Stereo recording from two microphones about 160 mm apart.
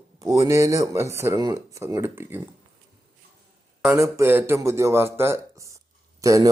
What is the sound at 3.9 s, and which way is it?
Speech, 15° right (ahead or behind).